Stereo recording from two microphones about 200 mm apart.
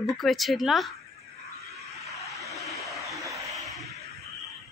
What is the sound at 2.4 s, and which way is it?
Vehicle, centre (ahead or behind).